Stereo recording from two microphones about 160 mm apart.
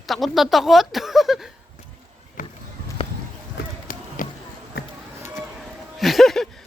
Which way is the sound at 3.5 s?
60° left (ahead or behind).